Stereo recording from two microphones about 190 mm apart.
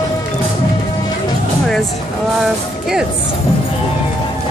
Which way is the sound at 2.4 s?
Centre (ahead or behind).